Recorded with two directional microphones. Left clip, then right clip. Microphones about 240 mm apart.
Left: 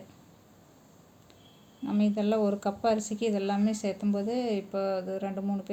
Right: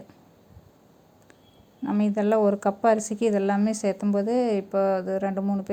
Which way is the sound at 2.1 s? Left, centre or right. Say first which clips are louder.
Right 8 dB; right.